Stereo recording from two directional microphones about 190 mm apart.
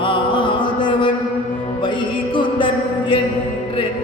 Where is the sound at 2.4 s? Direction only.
25° left (ahead or behind).